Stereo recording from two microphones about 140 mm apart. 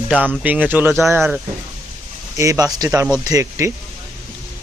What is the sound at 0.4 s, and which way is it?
Speech, 10° right (ahead or behind).